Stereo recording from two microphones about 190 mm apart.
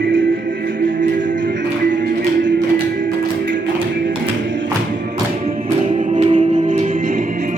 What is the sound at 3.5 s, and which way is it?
Music, 75° right (ahead or behind).